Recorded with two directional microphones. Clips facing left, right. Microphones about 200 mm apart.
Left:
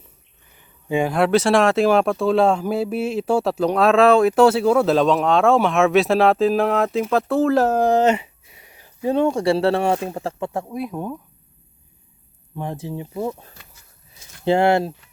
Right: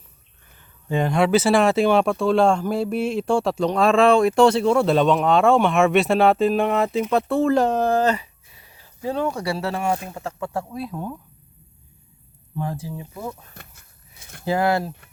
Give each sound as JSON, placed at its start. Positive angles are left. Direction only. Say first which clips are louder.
{"t": 0.5, "sound": "speech", "louder": "left 3 dB", "side_deg": 15}
{"t": 10.5, "sound": "speech", "louder": "left 2 dB", "side_deg": 15}
{"t": 12.5, "sound": "speech", "louder": "left 1 dB", "side_deg": 20}
{"t": 13.5, "sound": "a sound", "louder": "right 3 dB", "side_deg": -55}
{"t": 14.4, "sound": "speech", "louder": "left 4 dB", "side_deg": 25}